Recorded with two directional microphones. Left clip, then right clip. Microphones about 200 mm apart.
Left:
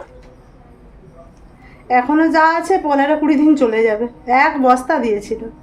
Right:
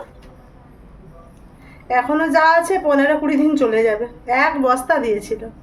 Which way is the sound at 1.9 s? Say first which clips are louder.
Left 3 dB; 20° left (ahead or behind).